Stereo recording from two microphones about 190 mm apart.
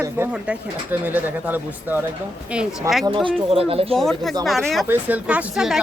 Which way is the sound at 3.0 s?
25° right (ahead or behind).